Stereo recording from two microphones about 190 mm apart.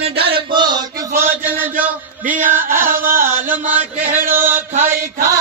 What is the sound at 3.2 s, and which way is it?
Mantra, 10° right (ahead or behind).